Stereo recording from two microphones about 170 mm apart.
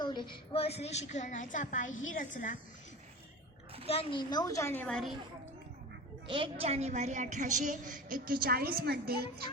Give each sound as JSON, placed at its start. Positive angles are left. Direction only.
{"t": 0.0, "sound": "a woman's voice", "side_deg": 25}
{"t": 3.8, "sound": "a woman's voice", "side_deg": 30}
{"t": 6.2, "sound": "a woman's voice", "side_deg": -30}